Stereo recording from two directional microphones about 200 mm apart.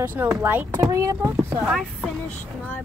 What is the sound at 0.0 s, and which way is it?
Speech, 10° right (ahead or behind).